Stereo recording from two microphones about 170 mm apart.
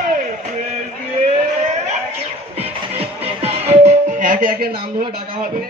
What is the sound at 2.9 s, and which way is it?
Music, 35° right (ahead or behind).